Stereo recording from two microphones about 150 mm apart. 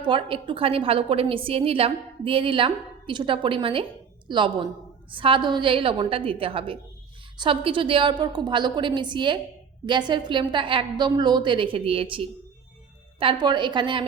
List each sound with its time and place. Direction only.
0.0 s a woman's voice: 35° right (ahead or behind)